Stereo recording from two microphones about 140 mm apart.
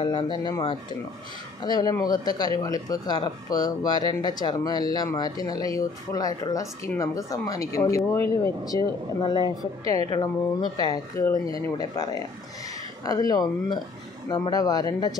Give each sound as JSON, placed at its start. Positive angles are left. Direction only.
{"t": 0.0, "sound": "speech", "side_deg": 35}
{"t": 11.1, "sound": "speech", "side_deg": 20}